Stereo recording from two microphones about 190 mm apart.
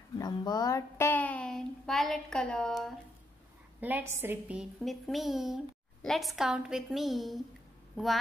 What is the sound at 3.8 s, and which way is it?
A woman's voice, 10° right (ahead or behind).